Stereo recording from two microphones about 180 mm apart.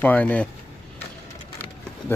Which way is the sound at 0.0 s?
10° left (ahead or behind).